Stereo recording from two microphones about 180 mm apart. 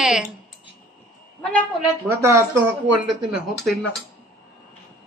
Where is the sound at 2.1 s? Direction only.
15° right (ahead or behind).